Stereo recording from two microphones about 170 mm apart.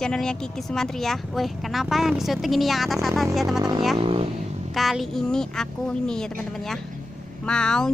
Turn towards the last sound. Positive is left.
turn(degrees=5)  # may be behind; listen again after turning